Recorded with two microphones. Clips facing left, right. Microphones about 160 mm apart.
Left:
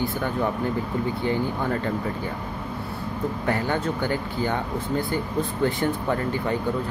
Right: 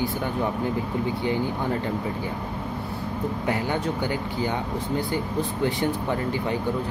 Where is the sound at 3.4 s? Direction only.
15° right (ahead or behind).